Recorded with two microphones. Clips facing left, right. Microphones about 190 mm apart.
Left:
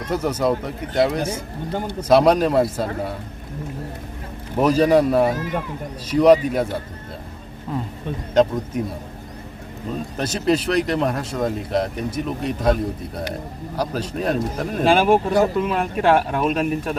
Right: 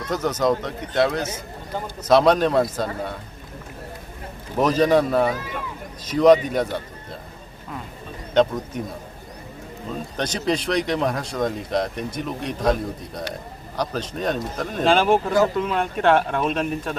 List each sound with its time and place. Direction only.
0.1 s speech: 10° left (ahead or behind)
4.5 s speech: 10° left (ahead or behind)
5.4 s speech: 45° left (ahead or behind)
6.1 s speech: 10° left (ahead or behind)
8.3 s speech: 10° left (ahead or behind)
10.2 s speech: 5° left (ahead or behind)